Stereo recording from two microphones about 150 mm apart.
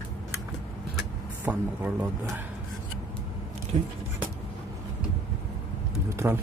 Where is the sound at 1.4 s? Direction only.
15° right (ahead or behind).